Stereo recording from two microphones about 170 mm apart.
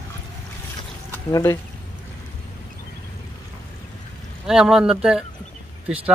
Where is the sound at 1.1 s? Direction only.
15° left (ahead or behind).